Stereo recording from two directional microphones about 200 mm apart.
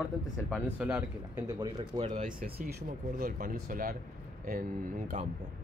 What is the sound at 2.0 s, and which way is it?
Speech, 35° right (ahead or behind).